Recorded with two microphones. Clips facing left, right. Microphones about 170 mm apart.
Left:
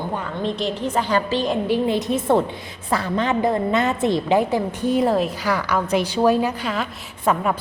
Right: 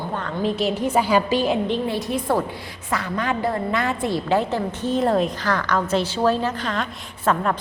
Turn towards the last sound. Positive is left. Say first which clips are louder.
# left 1 dB
turn(degrees=10)  # may be behind; listen again after turning